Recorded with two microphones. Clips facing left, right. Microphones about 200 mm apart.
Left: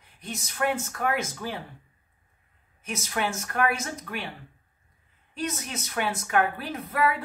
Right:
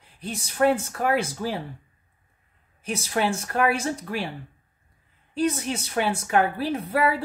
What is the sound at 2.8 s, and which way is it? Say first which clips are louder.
A woman's voice: right 5 dB; 30° right (ahead or behind).